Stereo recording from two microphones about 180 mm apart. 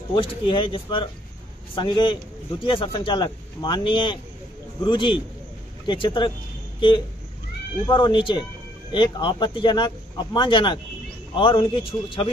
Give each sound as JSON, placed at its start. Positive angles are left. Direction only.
{"t": 0.1, "sound": "speech", "side_deg": 30}
{"t": 7.8, "sound": "speech", "side_deg": 25}